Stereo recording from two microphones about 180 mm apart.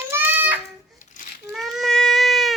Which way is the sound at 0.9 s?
45° left (ahead or behind).